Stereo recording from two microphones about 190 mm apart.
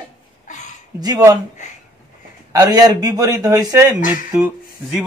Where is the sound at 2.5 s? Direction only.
20° right (ahead or behind).